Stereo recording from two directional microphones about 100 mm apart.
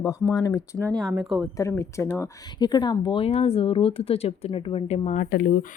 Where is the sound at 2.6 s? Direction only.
45° left (ahead or behind).